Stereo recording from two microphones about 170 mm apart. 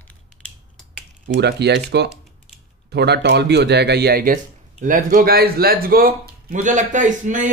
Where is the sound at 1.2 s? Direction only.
85° right.